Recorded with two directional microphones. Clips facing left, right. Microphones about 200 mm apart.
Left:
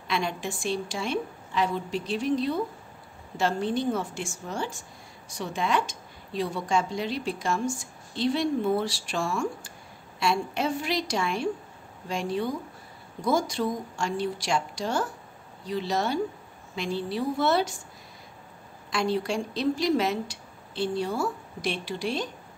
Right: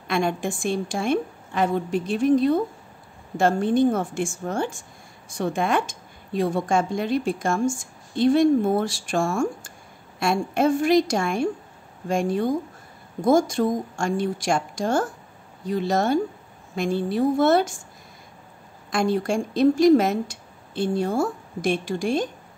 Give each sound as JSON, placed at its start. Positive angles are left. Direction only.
{"t": 0.1, "sound": "a woman's voice", "side_deg": -50}
{"t": 18.9, "sound": "a woman's voice", "side_deg": -50}